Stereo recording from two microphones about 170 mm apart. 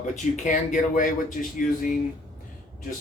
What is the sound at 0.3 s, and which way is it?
Speech, 50° left (ahead or behind).